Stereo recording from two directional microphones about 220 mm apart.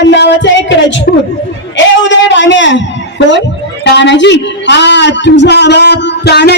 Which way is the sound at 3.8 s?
55° left (ahead or behind).